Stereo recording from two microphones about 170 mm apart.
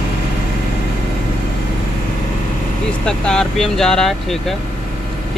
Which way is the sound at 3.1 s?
5° left (ahead or behind).